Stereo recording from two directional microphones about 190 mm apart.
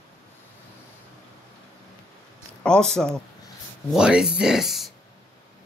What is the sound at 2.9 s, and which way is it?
Speech, 5° left (ahead or behind).